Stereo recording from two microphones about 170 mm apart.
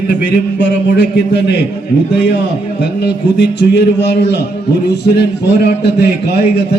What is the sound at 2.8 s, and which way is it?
A man's voice, 85° left.